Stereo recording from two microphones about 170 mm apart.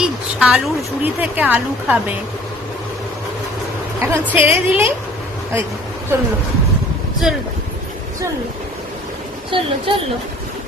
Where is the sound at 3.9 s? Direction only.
10° right (ahead or behind).